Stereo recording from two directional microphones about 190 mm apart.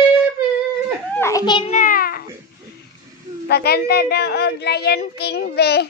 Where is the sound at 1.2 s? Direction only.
15° left (ahead or behind).